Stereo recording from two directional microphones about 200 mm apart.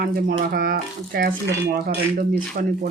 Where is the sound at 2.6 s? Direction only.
45° right (ahead or behind).